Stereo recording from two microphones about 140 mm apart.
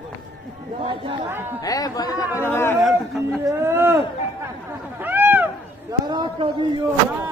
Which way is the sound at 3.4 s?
20° right (ahead or behind).